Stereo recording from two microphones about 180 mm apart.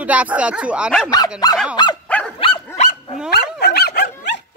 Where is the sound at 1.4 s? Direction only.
20° left (ahead or behind).